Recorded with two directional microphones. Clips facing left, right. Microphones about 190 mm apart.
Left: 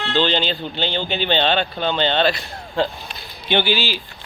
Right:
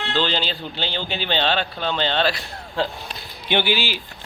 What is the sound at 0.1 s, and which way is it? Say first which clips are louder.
Speech: left 4 dB; 5° right (ahead or behind).